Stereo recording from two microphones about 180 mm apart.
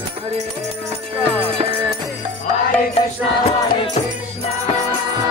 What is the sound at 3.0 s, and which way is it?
Music, 35° left (ahead or behind).